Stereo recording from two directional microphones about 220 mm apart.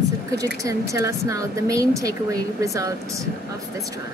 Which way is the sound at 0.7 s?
15° right (ahead or behind).